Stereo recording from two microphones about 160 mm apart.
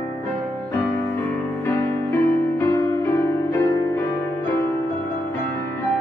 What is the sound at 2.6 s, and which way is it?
Music, 15° left (ahead or behind).